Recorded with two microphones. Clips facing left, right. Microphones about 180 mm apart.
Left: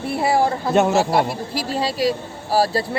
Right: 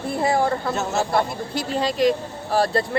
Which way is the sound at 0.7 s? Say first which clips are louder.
Left 7 dB; 70° left (ahead or behind).